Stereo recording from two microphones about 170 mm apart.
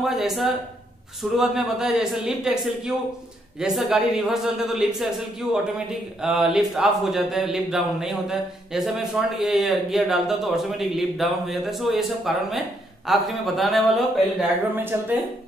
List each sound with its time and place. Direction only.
0.0 s speech: centre (ahead or behind)
14.7 s speech: 10° right (ahead or behind)